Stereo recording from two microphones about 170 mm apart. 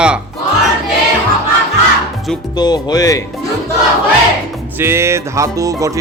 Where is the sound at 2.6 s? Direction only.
25° left (ahead or behind).